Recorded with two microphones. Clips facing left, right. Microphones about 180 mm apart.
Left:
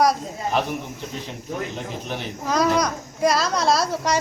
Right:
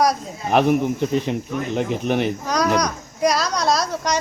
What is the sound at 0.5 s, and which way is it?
Speech, 60° right (ahead or behind).